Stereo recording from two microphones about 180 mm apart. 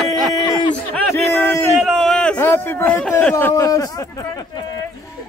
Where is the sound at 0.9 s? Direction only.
10° left (ahead or behind).